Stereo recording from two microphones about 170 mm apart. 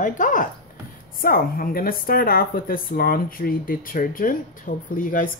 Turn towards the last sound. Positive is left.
turn(degrees=50)  # may be behind; listen again after turning